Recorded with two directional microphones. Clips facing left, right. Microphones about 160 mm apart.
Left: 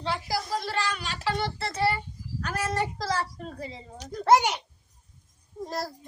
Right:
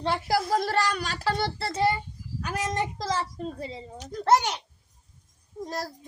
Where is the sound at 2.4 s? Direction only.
15° right (ahead or behind).